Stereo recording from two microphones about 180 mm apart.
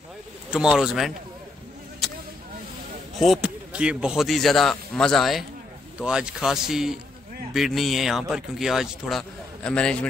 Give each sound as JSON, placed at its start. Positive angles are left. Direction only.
{"t": 0.5, "sound": "speech", "side_deg": -5}
{"t": 3.2, "sound": "speech", "side_deg": -5}